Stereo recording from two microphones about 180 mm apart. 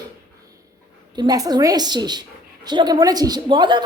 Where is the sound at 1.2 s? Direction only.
20° right (ahead or behind).